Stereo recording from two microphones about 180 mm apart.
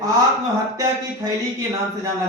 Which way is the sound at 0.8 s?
20° right (ahead or behind).